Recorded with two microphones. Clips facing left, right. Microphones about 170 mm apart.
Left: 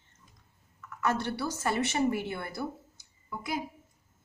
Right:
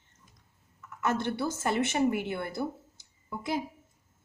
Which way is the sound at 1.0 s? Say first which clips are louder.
Right 1 dB; 20° right (ahead or behind).